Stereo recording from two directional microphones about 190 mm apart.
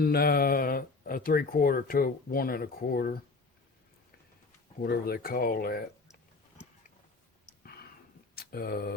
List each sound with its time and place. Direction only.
0.0 s speech: 55° left (ahead or behind)
4.8 s speech: 55° left (ahead or behind)
8.4 s speech: 50° left (ahead or behind)